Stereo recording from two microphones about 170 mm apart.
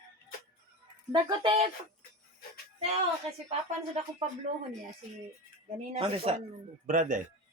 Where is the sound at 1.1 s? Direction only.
30° right (ahead or behind).